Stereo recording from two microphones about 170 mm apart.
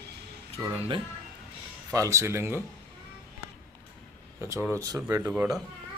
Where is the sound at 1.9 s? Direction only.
20° right (ahead or behind).